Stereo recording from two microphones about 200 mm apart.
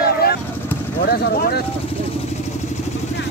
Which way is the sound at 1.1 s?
50° left (ahead or behind).